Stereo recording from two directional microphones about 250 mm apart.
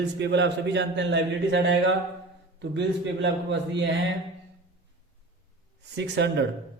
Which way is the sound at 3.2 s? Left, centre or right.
Right.